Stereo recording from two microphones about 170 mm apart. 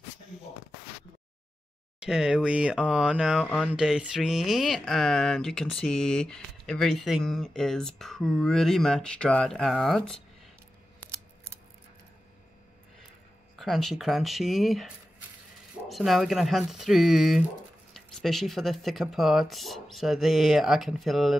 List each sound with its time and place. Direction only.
2.0 s speech: 5° right (ahead or behind)
13.6 s speech: centre (ahead or behind)
15.9 s speech: centre (ahead or behind)